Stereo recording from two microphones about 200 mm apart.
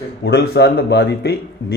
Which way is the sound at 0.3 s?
55° left (ahead or behind).